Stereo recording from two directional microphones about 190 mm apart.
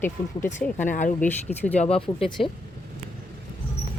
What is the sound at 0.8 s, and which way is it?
Speech, 40° left (ahead or behind).